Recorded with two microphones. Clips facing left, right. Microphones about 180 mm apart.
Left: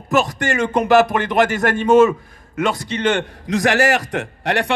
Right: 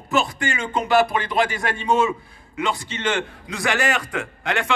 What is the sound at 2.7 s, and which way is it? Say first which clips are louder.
Speech: left 4 dB; 40° left (ahead or behind).